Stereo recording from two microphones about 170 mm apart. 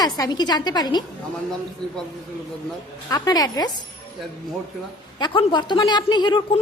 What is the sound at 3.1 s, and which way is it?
Speech, 20° left (ahead or behind).